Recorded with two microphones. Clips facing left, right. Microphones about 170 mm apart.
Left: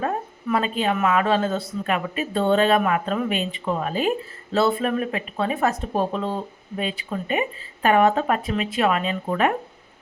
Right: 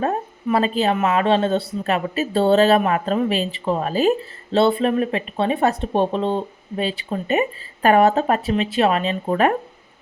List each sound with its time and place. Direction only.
0.4 s speech: 30° right (ahead or behind)